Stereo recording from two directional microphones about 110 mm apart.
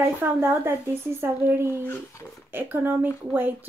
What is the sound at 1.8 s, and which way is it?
Speech, 20° left (ahead or behind).